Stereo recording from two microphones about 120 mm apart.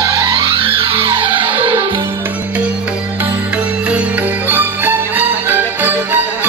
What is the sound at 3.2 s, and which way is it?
Music, 10° right (ahead or behind).